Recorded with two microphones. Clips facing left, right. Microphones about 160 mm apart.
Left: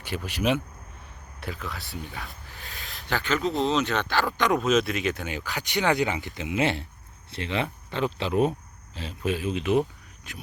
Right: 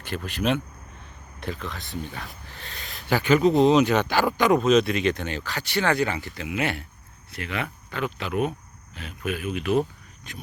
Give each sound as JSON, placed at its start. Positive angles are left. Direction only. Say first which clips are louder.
{"t": 0.0, "sound": "speech", "louder": "even", "side_deg": 10}
{"t": 3.2, "sound": "speech", "louder": "right 8 dB", "side_deg": -15}
{"t": 10.3, "sound": "speech", "louder": "right 2 dB", "side_deg": 5}